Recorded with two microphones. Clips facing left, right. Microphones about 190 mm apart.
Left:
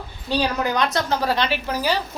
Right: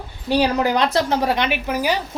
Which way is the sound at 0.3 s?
25° right (ahead or behind).